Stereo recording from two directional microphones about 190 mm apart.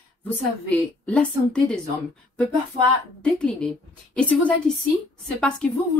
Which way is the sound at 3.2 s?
5° left (ahead or behind).